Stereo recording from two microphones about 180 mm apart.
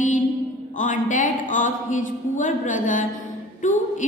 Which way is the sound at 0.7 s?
45° left (ahead or behind).